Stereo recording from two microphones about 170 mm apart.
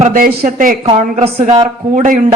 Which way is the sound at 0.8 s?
35° right (ahead or behind).